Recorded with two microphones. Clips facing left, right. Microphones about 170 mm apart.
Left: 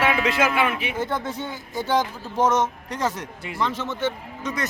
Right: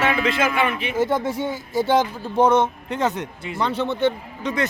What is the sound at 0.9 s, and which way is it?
Speech, 20° right (ahead or behind).